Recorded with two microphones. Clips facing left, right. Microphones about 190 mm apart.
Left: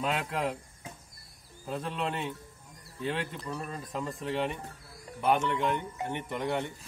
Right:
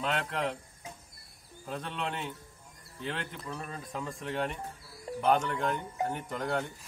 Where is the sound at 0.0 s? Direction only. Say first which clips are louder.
Left 1 dB; 5° left (ahead or behind).